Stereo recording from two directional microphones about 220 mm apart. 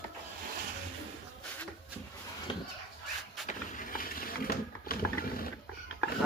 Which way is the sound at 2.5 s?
20° left (ahead or behind).